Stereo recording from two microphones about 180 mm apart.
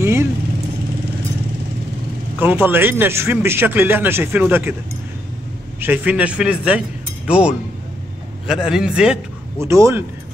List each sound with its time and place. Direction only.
0.0 s vehicle: 15° right (ahead or behind)
2.3 s speech: 10° right (ahead or behind)
5.8 s a man's voice: 10° right (ahead or behind)
9.7 s speech: 15° right (ahead or behind)